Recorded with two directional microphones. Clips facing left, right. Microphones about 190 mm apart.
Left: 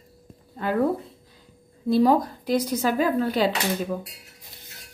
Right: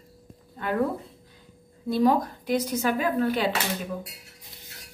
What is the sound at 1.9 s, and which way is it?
Speech, 35° left (ahead or behind).